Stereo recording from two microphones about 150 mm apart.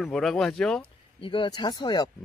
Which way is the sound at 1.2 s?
35° left (ahead or behind).